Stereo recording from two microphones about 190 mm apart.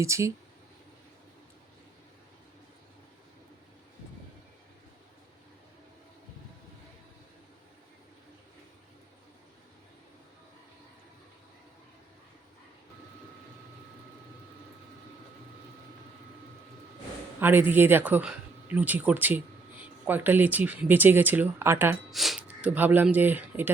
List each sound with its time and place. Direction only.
0.0 s speech: 15° right (ahead or behind)
17.4 s speech: 10° right (ahead or behind)
22.1 s speech: centre (ahead or behind)